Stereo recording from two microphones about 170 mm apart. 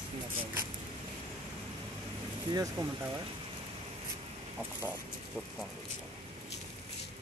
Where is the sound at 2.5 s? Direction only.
25° right (ahead or behind).